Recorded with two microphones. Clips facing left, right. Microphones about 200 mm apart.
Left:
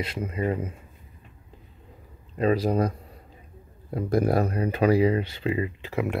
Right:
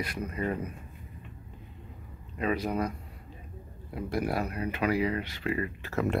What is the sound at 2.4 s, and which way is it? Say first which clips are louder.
Speech: left 7 dB; 35° left (ahead or behind).